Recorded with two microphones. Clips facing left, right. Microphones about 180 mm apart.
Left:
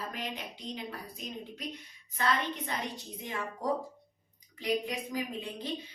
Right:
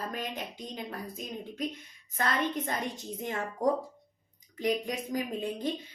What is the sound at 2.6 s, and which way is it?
Speech, 45° right (ahead or behind).